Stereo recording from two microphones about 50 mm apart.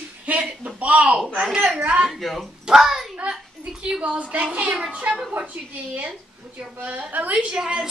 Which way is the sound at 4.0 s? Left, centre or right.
Right.